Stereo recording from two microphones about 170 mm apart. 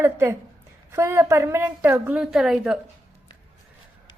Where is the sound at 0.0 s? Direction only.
15° right (ahead or behind).